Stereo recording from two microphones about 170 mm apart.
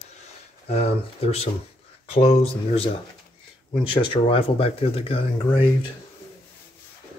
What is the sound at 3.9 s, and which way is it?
Speech, 35° left (ahead or behind).